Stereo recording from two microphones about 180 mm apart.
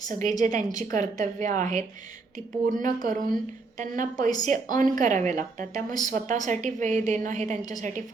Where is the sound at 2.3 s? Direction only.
45° right (ahead or behind).